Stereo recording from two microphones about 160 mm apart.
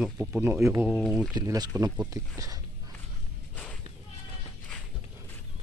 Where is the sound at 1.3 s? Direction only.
25° right (ahead or behind).